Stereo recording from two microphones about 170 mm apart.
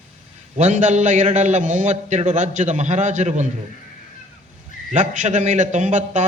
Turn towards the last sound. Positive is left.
turn(degrees=-45)  # may be behind; listen again after turning